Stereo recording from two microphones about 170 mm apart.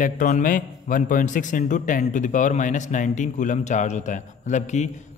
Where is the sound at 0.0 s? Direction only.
50° left (ahead or behind).